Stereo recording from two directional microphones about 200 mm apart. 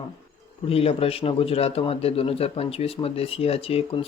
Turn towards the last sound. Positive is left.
turn(degrees=30)  # may be behind; listen again after turning